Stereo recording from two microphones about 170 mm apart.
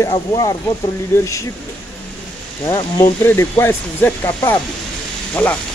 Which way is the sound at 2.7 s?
20° left (ahead or behind).